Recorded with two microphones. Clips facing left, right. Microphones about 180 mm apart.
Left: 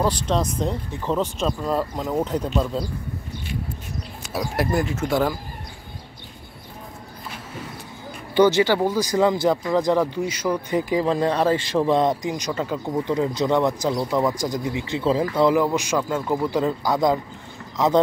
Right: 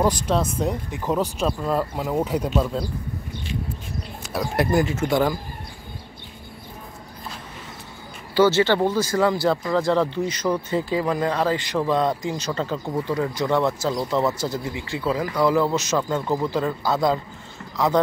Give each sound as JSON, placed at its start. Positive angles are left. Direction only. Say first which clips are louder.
{"t": 0.0, "sound": "speech", "louder": "right 1 dB", "side_deg": -10}
{"t": 4.4, "sound": "speech", "louder": "right 2 dB", "side_deg": 0}
{"t": 8.4, "sound": "speech", "louder": "left 1 dB", "side_deg": 15}
{"t": 15.5, "sound": "speech", "louder": "even", "side_deg": 15}